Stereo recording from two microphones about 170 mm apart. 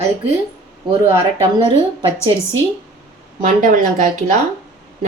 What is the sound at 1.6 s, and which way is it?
Speech, 35° right (ahead or behind).